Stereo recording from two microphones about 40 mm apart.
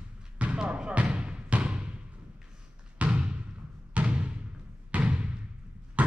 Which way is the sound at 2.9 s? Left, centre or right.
Right.